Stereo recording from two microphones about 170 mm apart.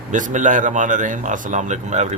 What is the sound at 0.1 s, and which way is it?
A man's voice, 50° right (ahead or behind).